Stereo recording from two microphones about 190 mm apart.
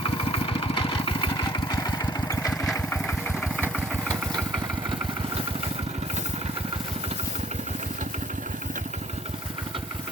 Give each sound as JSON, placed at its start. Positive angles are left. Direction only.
{"t": 0.3, "sound": "vehicle", "side_deg": 30}